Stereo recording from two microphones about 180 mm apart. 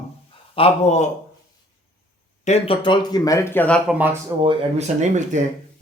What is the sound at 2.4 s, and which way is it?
Speech, 35° left (ahead or behind).